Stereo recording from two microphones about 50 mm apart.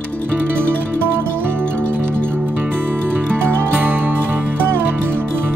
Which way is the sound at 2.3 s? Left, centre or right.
Right.